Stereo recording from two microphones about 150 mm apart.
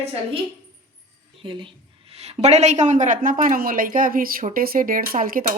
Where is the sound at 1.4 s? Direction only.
35° right (ahead or behind).